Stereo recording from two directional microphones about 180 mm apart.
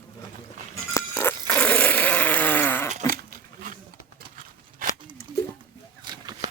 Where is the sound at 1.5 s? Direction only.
10° left (ahead or behind).